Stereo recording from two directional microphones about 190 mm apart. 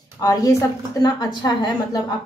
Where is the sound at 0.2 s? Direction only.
20° left (ahead or behind).